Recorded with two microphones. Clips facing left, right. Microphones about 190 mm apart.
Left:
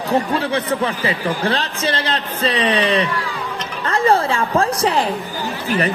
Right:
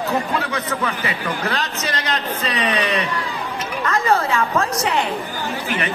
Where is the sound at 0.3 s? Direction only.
30° left (ahead or behind).